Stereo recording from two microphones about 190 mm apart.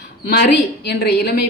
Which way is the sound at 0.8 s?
60° left (ahead or behind).